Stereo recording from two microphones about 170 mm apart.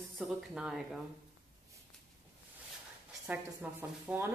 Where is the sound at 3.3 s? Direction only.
10° right (ahead or behind).